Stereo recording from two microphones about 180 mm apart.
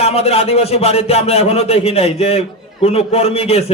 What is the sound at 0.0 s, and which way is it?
A man's voice, 35° left (ahead or behind).